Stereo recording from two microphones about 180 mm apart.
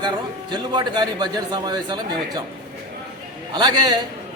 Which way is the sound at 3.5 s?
25° right (ahead or behind).